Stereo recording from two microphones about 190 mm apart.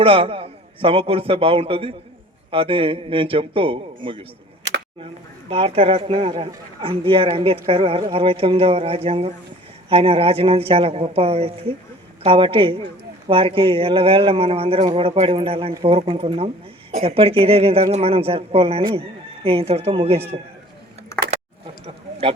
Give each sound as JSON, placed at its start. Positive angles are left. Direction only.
{"t": 0.0, "sound": "a man's voice", "side_deg": -30}
{"t": 5.5, "sound": "a man's voice", "side_deg": -30}